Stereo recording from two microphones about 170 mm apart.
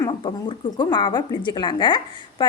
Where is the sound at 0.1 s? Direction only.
30° left (ahead or behind).